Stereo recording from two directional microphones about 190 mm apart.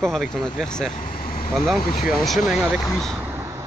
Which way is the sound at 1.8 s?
50° left (ahead or behind).